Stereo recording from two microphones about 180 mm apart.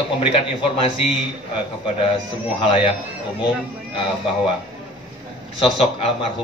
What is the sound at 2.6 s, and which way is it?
Speech, 30° left (ahead or behind).